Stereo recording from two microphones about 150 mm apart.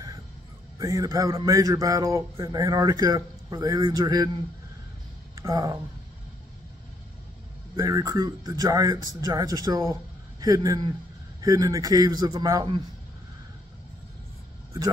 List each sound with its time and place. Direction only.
0.7 s a man's voice: 20° right (ahead or behind)
5.3 s speech: 20° right (ahead or behind)
7.7 s a man's voice: 20° right (ahead or behind)